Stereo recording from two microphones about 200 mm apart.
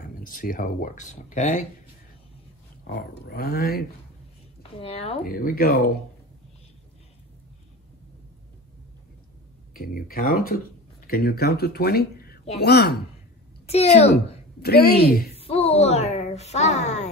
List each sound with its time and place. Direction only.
0.2 s speech: 45° left (ahead or behind)
2.9 s speech: 50° left (ahead or behind)
4.7 s speech: 30° left (ahead or behind)
5.2 s speech: 45° left (ahead or behind)
9.8 s speech: 45° left (ahead or behind)
13.7 s speech: 35° left (ahead or behind)
14.6 s speech: 50° left (ahead or behind)
15.3 s speech: 30° left (ahead or behind)